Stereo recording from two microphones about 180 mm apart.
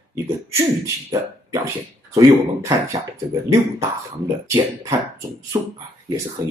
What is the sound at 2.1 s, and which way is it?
Speech, 20° right (ahead or behind).